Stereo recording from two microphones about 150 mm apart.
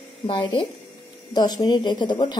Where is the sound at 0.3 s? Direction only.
35° left (ahead or behind).